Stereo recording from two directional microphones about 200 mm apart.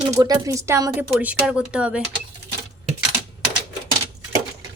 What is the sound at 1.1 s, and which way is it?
Speech, 5° right (ahead or behind).